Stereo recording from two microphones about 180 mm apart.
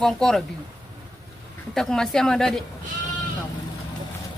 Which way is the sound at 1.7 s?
5° left (ahead or behind).